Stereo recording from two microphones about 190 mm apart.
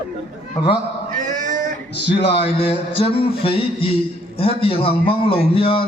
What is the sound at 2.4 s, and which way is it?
A man's voice, 30° left (ahead or behind).